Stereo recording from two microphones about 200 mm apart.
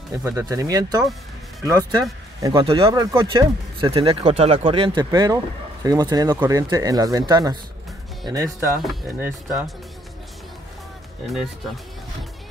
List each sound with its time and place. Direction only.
0.2 s speech: 15° right (ahead or behind)
9.2 s speech: 5° right (ahead or behind)
11.2 s speech: centre (ahead or behind)